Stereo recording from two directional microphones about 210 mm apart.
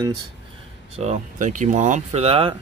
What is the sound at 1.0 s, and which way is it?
Speech, 35° right (ahead or behind).